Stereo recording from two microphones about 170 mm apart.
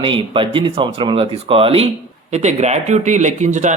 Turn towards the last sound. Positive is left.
turn(degrees=-45)  # may be behind; listen again after turning